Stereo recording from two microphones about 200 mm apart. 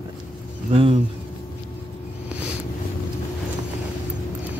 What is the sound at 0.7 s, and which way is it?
Speech, 25° right (ahead or behind).